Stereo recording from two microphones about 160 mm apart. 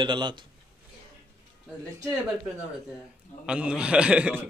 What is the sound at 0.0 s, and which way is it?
Speech, 30° right (ahead or behind).